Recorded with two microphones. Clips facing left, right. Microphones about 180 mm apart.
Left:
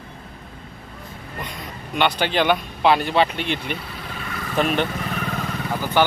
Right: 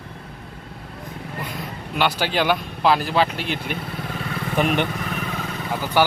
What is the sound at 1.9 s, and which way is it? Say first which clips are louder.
Speech: left 1 dB; 5° right (ahead or behind).